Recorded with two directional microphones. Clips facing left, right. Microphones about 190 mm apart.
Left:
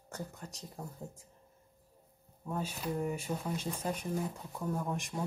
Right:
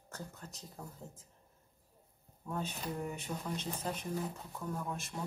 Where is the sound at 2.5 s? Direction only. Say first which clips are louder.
Left 3 dB; 10° left (ahead or behind).